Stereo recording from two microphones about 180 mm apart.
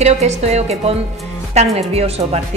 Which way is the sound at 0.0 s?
40° right (ahead or behind).